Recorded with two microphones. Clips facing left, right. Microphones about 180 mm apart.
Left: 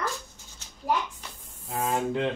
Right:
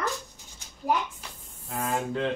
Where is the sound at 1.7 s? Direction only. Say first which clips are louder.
Left 2 dB; 15° left (ahead or behind).